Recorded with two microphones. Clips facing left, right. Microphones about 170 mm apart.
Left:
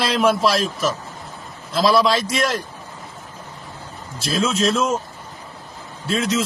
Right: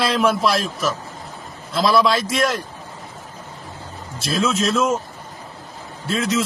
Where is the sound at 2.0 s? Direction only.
25° left (ahead or behind).